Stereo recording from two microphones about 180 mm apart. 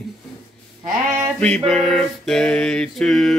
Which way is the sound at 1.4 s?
5° left (ahead or behind).